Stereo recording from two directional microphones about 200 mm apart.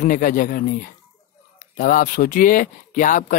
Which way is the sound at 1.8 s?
40° left (ahead or behind).